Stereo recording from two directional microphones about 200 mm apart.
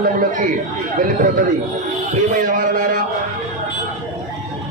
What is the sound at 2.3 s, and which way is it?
Speech, 40° right (ahead or behind).